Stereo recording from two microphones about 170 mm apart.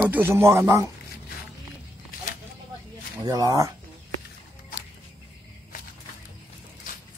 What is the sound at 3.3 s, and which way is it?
Speech, 20° right (ahead or behind).